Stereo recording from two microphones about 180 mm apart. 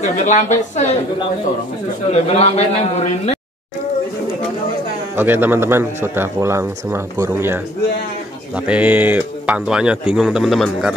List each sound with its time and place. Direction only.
0.0 s a man's voice: 40° left (ahead or behind)
2.0 s a man's voice: 35° left (ahead or behind)
5.1 s a man's voice: 10° right (ahead or behind)